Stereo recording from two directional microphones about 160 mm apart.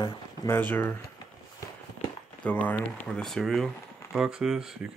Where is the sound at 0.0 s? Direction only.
25° left (ahead or behind).